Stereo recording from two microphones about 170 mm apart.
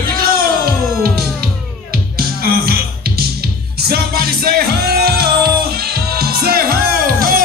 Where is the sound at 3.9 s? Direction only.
65° right (ahead or behind).